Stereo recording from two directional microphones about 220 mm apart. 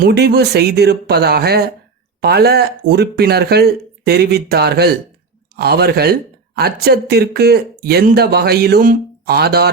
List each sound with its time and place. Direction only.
0.0 s speech: 45° right (ahead or behind)